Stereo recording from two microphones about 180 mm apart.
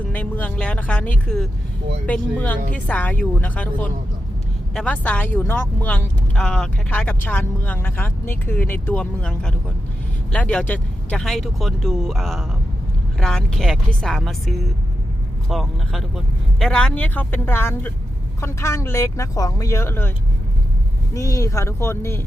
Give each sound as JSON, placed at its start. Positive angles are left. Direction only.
{"t": 0.1, "sound": "speech", "side_deg": 10}